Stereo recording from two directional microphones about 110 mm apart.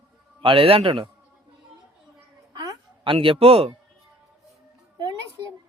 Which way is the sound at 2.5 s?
35° right (ahead or behind).